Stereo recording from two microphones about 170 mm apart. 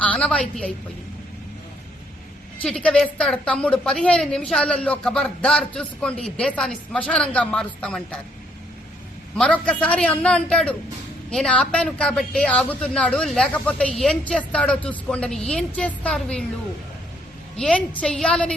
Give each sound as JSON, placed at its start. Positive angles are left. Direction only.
{"t": 0.0, "sound": "a woman's voice", "side_deg": 5}
{"t": 2.6, "sound": "a woman's voice", "side_deg": 5}
{"t": 9.3, "sound": "a man's voice", "side_deg": 5}
{"t": 17.6, "sound": "a woman's voice", "side_deg": 5}